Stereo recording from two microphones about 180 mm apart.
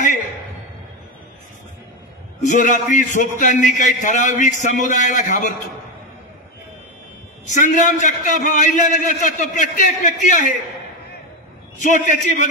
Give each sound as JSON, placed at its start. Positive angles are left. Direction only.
{"t": 2.4, "sound": "a man's voice", "side_deg": 40}
{"t": 7.4, "sound": "a man's voice", "side_deg": 45}
{"t": 11.8, "sound": "a man's voice", "side_deg": 40}